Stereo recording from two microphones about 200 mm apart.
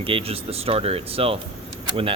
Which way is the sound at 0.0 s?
30° right (ahead or behind).